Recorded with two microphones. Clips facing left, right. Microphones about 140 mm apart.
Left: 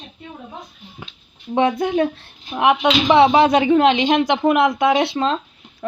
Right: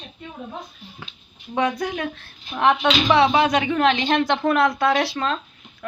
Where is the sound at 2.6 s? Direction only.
15° left (ahead or behind).